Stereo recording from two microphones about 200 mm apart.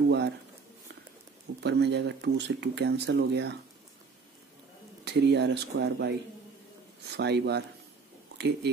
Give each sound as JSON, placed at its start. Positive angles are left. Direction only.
{"t": 1.6, "sound": "speech", "side_deg": -60}
{"t": 5.0, "sound": "speech", "side_deg": -60}